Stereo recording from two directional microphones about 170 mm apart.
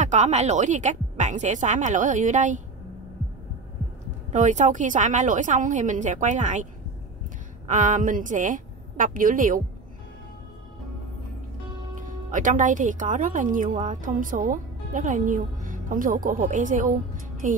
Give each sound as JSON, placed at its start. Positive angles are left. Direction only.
{"t": 0.0, "sound": "speech", "side_deg": -45}
{"t": 4.3, "sound": "a woman's voice", "side_deg": -45}
{"t": 12.0, "sound": "speech", "side_deg": -50}